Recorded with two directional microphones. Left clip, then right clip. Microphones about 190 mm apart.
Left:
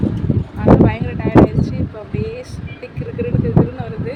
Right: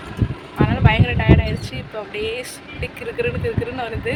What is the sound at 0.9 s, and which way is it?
Speech, centre (ahead or behind).